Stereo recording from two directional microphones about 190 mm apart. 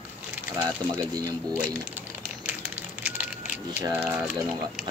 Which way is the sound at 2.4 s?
10° right (ahead or behind).